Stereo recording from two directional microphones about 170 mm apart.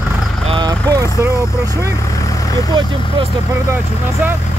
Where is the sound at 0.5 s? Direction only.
25° right (ahead or behind).